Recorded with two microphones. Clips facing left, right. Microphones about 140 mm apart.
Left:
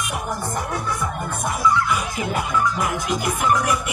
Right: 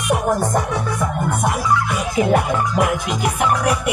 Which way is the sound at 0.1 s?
70° right (ahead or behind).